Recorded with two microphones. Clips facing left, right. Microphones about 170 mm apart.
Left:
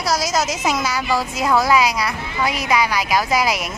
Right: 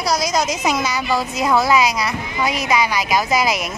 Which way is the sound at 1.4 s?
10° right (ahead or behind).